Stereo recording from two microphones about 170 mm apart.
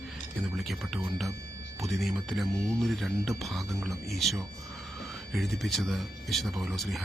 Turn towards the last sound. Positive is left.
turn(degrees=0)  # may be behind; listen again after turning